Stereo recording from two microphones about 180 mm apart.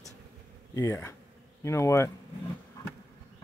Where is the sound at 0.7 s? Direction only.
15° left (ahead or behind).